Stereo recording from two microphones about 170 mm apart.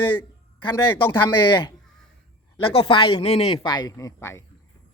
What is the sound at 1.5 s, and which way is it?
Speech, 25° left (ahead or behind).